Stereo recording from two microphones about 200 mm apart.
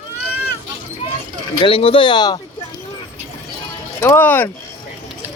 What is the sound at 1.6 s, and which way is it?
Speech, 25° left (ahead or behind).